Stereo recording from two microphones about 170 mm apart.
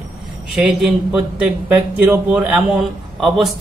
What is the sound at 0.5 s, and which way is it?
A man's voice, 5° right (ahead or behind).